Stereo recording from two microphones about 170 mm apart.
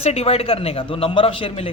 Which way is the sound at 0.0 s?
35° left (ahead or behind).